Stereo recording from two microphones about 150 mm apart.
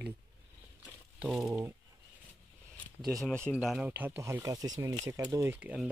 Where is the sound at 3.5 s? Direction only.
Centre (ahead or behind).